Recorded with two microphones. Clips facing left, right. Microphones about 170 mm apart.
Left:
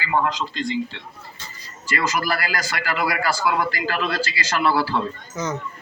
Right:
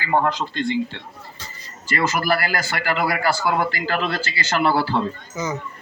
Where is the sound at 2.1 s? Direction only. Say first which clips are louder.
Right 3 dB; 50° right (ahead or behind).